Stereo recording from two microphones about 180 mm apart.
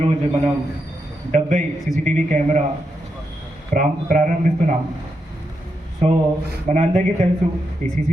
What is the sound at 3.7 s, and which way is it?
Speech, 50° right (ahead or behind).